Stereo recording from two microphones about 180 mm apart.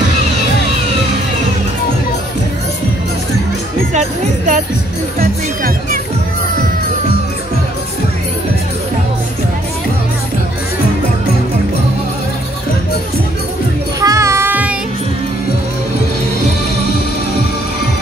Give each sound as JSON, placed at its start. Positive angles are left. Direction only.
{"t": 3.9, "sound": "music", "side_deg": -40}
{"t": 5.2, "sound": "music", "side_deg": -50}
{"t": 14.0, "sound": "child singing", "side_deg": -15}